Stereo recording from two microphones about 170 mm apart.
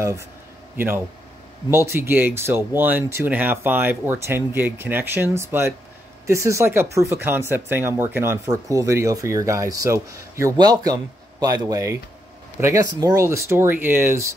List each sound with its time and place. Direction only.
0.7 s speech: 15° right (ahead or behind)